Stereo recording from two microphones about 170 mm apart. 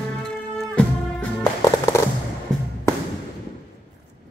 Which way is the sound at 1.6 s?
15° left (ahead or behind).